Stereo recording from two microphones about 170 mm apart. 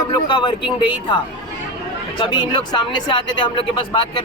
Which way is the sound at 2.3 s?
25° left (ahead or behind).